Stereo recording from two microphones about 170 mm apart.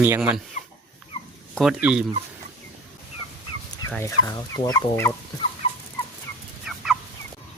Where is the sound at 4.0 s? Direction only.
20° left (ahead or behind).